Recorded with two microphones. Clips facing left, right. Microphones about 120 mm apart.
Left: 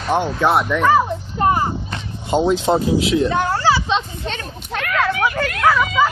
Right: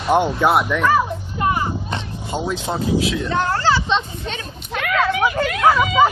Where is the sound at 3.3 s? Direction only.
15° left (ahead or behind).